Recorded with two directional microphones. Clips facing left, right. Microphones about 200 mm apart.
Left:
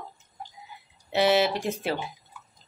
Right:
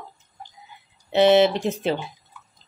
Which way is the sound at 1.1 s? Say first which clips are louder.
Right 6 dB; 25° right (ahead or behind).